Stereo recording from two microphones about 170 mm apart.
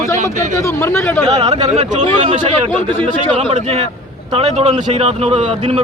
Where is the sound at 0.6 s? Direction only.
15° left (ahead or behind).